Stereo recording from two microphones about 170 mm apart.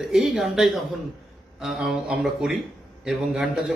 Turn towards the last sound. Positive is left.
turn(degrees=0)  # may be behind; listen again after turning